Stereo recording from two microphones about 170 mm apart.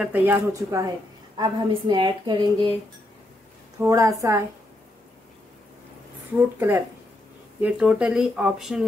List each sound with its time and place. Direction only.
0.0 s a woman's voice: 10° right (ahead or behind); by 2.7 s 25° right (ahead or behind)
3.8 s a woman's voice: 15° right (ahead or behind)
6.3 s a woman's voice: 15° right (ahead or behind)